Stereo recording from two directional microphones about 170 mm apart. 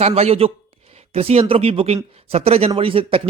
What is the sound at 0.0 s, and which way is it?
Speech, 35° right (ahead or behind).